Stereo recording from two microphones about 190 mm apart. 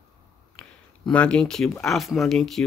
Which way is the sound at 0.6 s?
5° left (ahead or behind).